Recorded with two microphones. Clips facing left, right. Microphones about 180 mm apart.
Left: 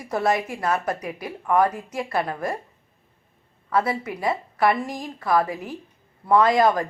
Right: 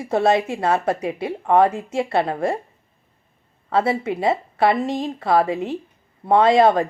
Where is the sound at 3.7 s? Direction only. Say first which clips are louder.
Right 4 dB; 25° right (ahead or behind).